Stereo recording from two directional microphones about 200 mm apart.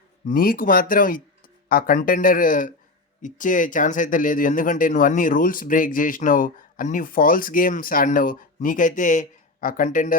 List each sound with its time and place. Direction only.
0.3 s speech: 45° left (ahead or behind)